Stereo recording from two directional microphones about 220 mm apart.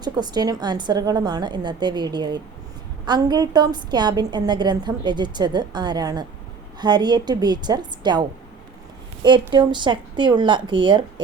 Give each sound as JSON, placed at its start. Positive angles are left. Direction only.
{"t": 0.0, "sound": "a woman's voice", "side_deg": -20}
{"t": 9.5, "sound": "a woman's voice", "side_deg": -20}